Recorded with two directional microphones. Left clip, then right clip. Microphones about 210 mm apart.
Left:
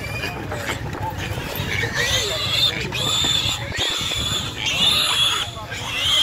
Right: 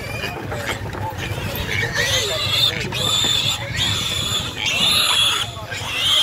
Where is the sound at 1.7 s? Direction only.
25° right (ahead or behind).